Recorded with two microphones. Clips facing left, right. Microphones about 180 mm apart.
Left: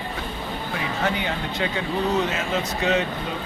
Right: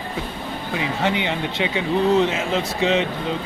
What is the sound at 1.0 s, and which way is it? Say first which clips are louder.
Speech: right 3 dB; 25° right (ahead or behind).